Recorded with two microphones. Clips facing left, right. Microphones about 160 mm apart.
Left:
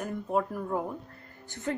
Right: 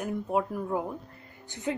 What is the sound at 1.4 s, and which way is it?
Speech, 15° right (ahead or behind).